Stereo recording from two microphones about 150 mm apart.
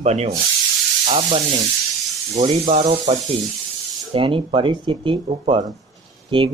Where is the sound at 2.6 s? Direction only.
50° right (ahead or behind).